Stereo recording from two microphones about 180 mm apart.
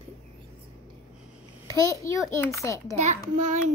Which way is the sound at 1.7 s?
20° left (ahead or behind).